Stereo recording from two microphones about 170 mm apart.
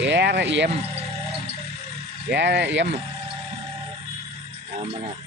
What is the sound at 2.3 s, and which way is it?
Speech, 90° right.